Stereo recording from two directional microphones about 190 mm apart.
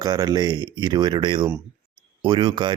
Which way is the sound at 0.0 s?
20° right (ahead or behind).